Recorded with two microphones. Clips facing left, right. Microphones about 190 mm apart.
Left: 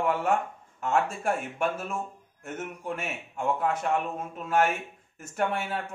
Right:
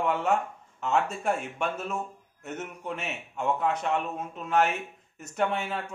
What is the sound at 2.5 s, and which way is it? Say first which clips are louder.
Speech: left 2 dB; 50° left (ahead or behind).